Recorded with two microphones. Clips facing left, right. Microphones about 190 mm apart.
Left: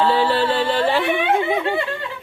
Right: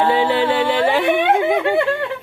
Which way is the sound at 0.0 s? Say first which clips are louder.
Right 1 dB; 15° right (ahead or behind).